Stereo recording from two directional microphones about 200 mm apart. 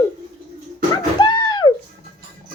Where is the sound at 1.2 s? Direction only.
20° left (ahead or behind).